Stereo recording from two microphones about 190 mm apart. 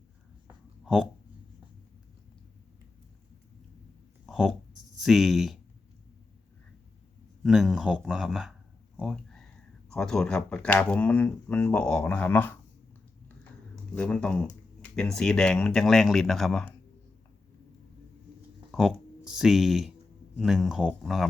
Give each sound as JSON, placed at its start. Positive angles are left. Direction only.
{"t": 4.3, "sound": "a sound", "side_deg": 0}
{"t": 7.4, "sound": "speech", "side_deg": 0}
{"t": 9.0, "sound": "a sound", "side_deg": 0}
{"t": 9.9, "sound": "speech", "side_deg": 5}
{"t": 13.9, "sound": "speech", "side_deg": 5}
{"t": 18.7, "sound": "speech", "side_deg": 0}